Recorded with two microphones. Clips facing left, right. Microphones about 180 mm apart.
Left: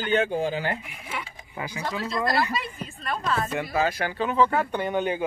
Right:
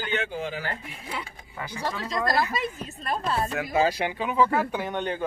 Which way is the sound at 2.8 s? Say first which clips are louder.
Right 1 dB; 40° right (ahead or behind).